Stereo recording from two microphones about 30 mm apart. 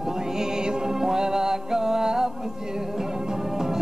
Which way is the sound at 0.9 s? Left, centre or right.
Centre.